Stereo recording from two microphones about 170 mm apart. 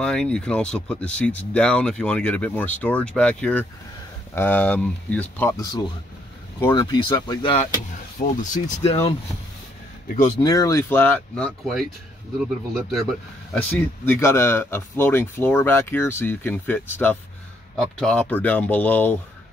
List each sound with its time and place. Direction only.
0.0 s speech: 5° left (ahead or behind)
5.6 s speech: 25° left (ahead or behind)
7.5 s speech: 45° left (ahead or behind)
10.4 s speech: 20° left (ahead or behind)